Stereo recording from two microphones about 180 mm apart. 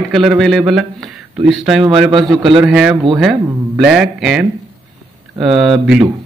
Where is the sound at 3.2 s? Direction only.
Centre (ahead or behind).